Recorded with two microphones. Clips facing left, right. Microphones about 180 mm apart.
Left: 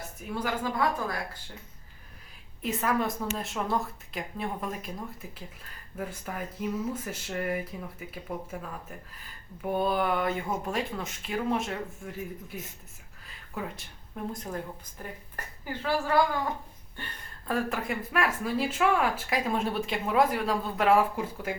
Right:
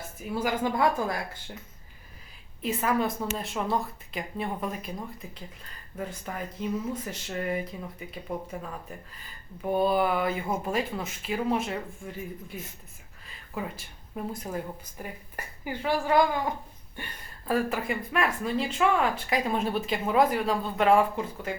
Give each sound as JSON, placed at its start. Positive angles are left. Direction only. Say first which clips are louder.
{"t": 0.2, "sound": "a woman's voice", "louder": "right 3 dB", "side_deg": -10}
{"t": 0.5, "sound": "speech", "louder": "right 3 dB", "side_deg": -25}
{"t": 2.6, "sound": "speech", "louder": "right 2 dB", "side_deg": 0}
{"t": 6.0, "sound": "speech", "louder": "right 1 dB", "side_deg": 5}
{"t": 13.2, "sound": "a sound", "louder": "right 2 dB", "side_deg": 0}
{"t": 14.3, "sound": "a woman's voice", "louder": "right 2 dB", "side_deg": -10}